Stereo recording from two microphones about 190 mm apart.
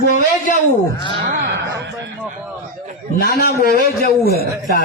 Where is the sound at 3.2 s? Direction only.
55° left (ahead or behind).